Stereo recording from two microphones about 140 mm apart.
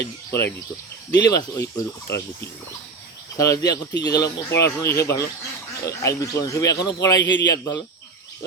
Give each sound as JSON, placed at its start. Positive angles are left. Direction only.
{"t": 0.3, "sound": "a man's voice", "side_deg": 20}